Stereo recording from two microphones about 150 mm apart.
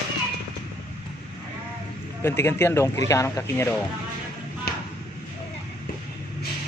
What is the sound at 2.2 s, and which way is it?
Speech, 15° left (ahead or behind).